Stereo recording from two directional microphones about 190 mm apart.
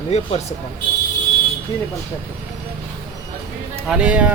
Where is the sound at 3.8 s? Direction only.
5° right (ahead or behind).